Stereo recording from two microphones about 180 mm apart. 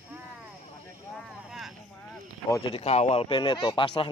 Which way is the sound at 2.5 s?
30° left (ahead or behind).